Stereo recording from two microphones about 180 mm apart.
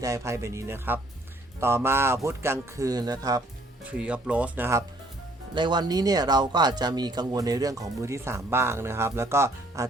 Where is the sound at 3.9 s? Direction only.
5° right (ahead or behind).